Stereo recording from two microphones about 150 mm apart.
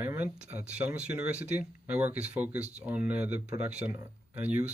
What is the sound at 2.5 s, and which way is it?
Speech, 50° right (ahead or behind).